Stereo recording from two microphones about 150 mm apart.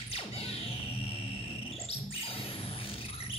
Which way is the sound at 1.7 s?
40° left (ahead or behind).